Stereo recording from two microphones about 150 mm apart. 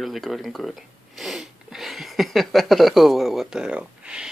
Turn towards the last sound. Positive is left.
turn(degrees=-5)  # may be behind; listen again after turning